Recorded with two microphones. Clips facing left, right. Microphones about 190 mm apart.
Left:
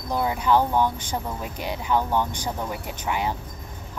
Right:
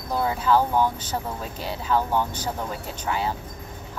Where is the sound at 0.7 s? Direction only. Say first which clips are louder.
Even; 10° right (ahead or behind).